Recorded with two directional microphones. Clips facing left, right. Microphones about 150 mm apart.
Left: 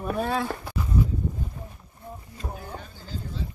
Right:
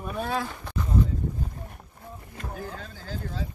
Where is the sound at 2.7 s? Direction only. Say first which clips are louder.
Right 1 dB; 90° right.